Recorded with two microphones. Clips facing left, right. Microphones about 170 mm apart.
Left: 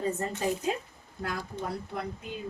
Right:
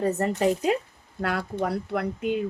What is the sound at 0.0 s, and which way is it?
Speech, 70° right (ahead or behind).